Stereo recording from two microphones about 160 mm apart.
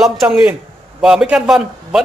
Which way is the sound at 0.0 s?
Centre (ahead or behind).